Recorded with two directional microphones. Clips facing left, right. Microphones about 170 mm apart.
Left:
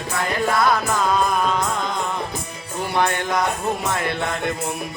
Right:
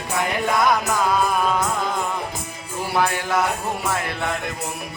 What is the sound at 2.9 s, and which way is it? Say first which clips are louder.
Music: left 1 dB; 5° right (ahead or behind).